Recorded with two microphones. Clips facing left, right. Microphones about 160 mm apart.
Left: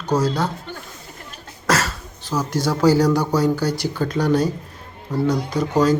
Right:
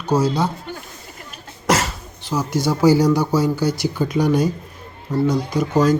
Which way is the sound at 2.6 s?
10° right (ahead or behind).